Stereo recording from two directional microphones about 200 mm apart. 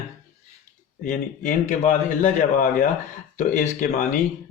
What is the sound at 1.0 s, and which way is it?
Speech, 40° left (ahead or behind).